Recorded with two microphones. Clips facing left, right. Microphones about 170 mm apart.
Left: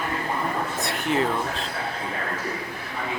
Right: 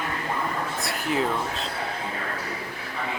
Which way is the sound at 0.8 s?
Centre (ahead or behind).